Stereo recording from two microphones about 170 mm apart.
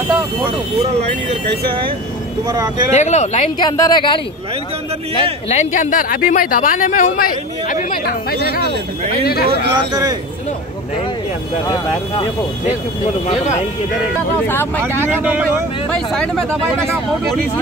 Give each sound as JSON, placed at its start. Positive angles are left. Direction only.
{"t": 2.9, "sound": "speech", "side_deg": 40}
{"t": 3.5, "sound": "speech", "side_deg": 20}
{"t": 5.5, "sound": "speech", "side_deg": 45}
{"t": 9.2, "sound": "speech", "side_deg": 65}
{"t": 14.8, "sound": "speech", "side_deg": -10}
{"t": 15.9, "sound": "speech", "side_deg": 5}